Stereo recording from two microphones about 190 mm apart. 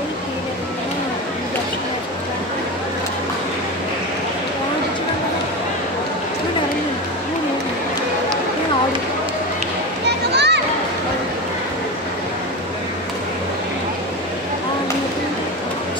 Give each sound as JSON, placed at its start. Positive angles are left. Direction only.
{"t": 10.0, "sound": "children playing", "side_deg": -60}